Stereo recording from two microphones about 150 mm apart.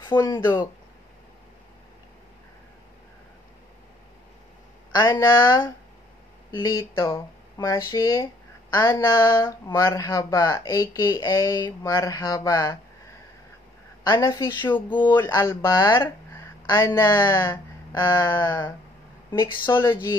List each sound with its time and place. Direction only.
0.3 s speech: 30° left (ahead or behind)
4.9 s speech: 25° left (ahead or behind)
14.0 s speech: 25° left (ahead or behind)
15.2 s speech: 20° left (ahead or behind)